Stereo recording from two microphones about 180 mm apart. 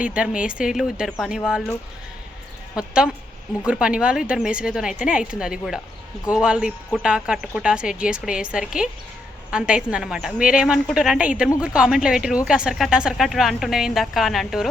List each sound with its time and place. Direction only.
0.0 s speech: 5° right (ahead or behind)
2.7 s speech: 5° right (ahead or behind)